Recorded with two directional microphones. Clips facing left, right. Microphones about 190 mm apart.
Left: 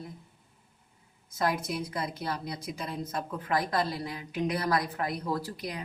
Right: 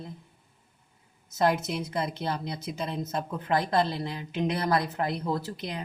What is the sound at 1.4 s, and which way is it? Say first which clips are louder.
A woman's voice: right 4 dB; 25° right (ahead or behind).